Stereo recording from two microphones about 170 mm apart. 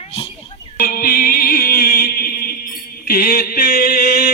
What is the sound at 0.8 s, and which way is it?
Music, 60° left (ahead or behind).